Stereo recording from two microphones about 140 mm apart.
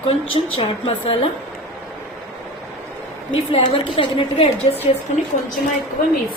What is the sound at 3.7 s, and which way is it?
Speech, 40° left (ahead or behind).